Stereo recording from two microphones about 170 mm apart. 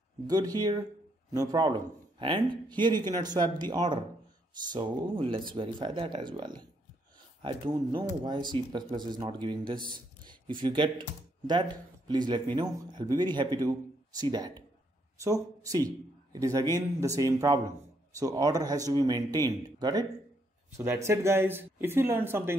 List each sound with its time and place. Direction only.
0.3 s speech: 25° right (ahead or behind)
4.7 s speech: 25° right (ahead or behind)